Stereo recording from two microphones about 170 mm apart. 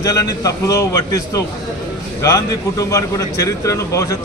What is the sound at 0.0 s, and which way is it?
A man's voice, 20° left (ahead or behind).